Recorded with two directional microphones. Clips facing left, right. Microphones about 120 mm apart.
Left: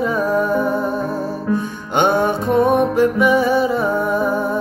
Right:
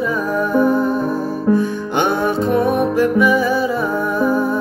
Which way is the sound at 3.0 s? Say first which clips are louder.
Even; 25° left (ahead or behind).